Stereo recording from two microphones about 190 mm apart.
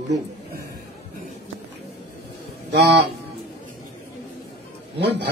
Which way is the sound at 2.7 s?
65° right (ahead or behind).